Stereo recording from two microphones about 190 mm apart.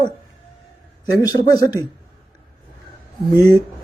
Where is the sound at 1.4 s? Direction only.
20° left (ahead or behind).